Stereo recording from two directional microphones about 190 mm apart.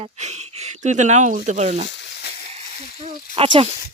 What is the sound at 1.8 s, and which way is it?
Frying, 65° left (ahead or behind).